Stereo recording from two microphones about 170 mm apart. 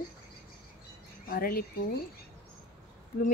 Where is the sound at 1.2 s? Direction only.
60° left (ahead or behind).